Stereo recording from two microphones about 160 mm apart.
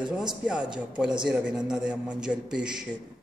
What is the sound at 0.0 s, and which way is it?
Speech, 25° right (ahead or behind).